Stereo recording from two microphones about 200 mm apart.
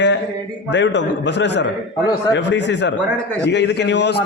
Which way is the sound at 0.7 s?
65° left (ahead or behind).